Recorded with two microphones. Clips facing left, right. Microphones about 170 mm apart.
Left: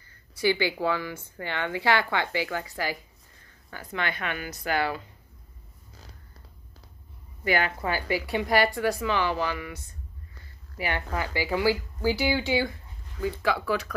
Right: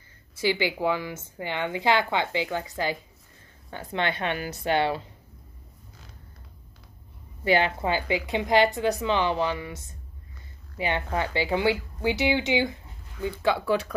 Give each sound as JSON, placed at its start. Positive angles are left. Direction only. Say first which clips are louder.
{"t": 0.4, "sound": "a woman's voice", "louder": "even", "side_deg": -20}
{"t": 7.4, "sound": "a woman's voice", "louder": "right 3 dB", "side_deg": -25}